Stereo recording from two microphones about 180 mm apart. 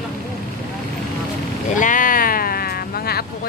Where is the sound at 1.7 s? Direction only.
45° left (ahead or behind).